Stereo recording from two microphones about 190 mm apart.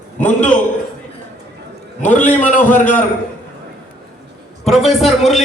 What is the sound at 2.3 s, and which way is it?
Speech, 40° left (ahead or behind).